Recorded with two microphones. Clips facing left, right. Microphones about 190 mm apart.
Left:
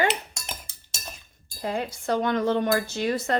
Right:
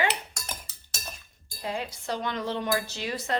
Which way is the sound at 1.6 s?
50° left (ahead or behind).